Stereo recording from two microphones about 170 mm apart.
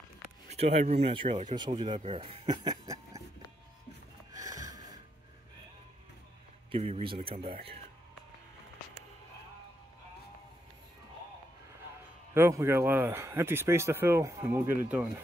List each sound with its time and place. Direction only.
0.5 s speech: 35° right (ahead or behind); by 3.2 s 20° right (ahead or behind)
4.5 s snort: 20° right (ahead or behind)
6.7 s speech: 35° right (ahead or behind)
12.4 s speech: 15° right (ahead or behind)